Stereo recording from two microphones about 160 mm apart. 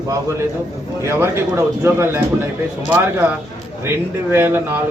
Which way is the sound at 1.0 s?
15° right (ahead or behind).